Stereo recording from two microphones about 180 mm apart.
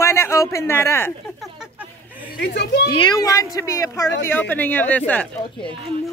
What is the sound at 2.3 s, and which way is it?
Speech, 65° left (ahead or behind).